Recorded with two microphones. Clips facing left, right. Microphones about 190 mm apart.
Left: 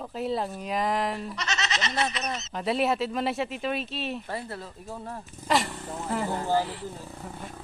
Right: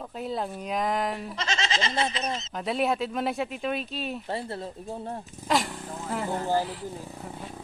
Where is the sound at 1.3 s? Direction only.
30° right (ahead or behind).